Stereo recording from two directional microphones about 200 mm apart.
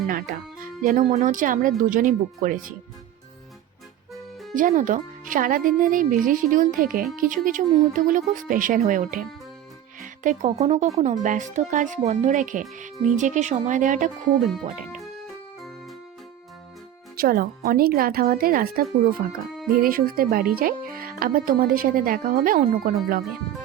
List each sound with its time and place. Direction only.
0.8 s speech: 40° right (ahead or behind)
4.1 s music: centre (ahead or behind)
4.5 s speech: 40° right (ahead or behind)
17.2 s speech: 50° right (ahead or behind)